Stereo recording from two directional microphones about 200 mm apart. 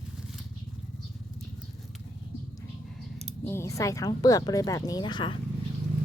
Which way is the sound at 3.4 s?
10° left (ahead or behind).